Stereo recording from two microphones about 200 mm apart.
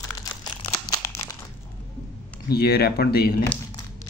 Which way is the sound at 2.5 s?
50° left (ahead or behind).